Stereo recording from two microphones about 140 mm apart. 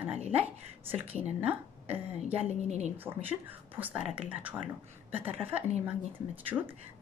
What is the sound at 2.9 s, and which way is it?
Speech, 15° right (ahead or behind).